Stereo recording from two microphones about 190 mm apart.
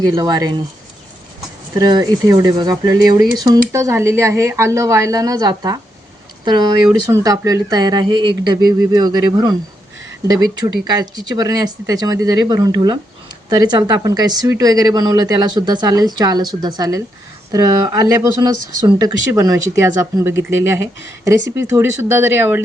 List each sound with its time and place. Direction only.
0.0 s speech: 20° right (ahead or behind)
1.8 s speech: 20° right (ahead or behind)
10.8 s speech: 20° right (ahead or behind)